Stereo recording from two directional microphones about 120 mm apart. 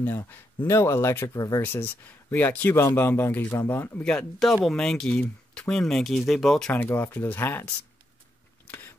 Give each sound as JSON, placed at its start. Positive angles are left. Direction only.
{"t": 0.0, "sound": "speech", "side_deg": 20}
{"t": 1.6, "sound": "speech", "side_deg": 15}
{"t": 4.0, "sound": "speech", "side_deg": 5}
{"t": 8.6, "sound": "a sound", "side_deg": 15}